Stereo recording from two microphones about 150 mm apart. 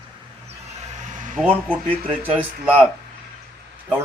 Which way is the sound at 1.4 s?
10° right (ahead or behind).